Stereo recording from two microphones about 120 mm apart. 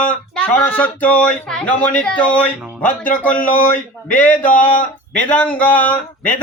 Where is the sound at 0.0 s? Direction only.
10° left (ahead or behind).